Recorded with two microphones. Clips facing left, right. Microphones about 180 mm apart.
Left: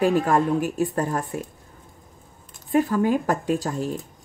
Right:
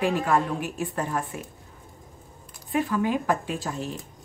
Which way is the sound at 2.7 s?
40° left (ahead or behind).